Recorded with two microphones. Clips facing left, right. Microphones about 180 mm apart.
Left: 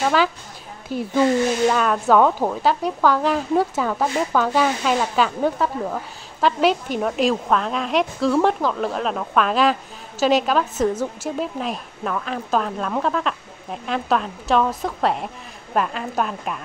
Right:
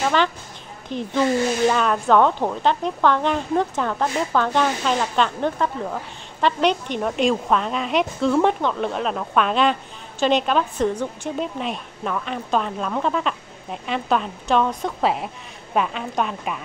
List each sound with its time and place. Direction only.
0.0 s a woman's voice: 5° left (ahead or behind)